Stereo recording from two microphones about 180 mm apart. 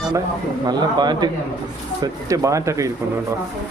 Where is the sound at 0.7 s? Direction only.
25° right (ahead or behind).